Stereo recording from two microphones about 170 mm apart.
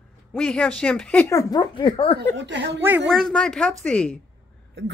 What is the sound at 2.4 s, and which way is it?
Speech, 90° right.